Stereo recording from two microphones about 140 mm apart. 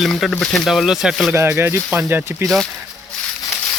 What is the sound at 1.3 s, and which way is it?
Speech, 20° right (ahead or behind).